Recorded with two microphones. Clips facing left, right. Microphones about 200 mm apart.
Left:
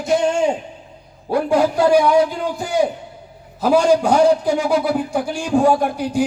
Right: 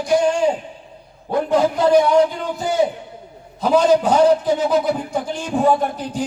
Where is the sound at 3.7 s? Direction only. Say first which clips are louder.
Even; 10° left (ahead or behind).